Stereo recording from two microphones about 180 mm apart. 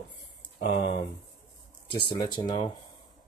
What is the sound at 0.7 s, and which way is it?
Speech, 30° left (ahead or behind).